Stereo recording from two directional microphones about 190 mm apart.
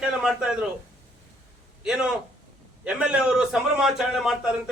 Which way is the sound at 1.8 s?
5° right (ahead or behind).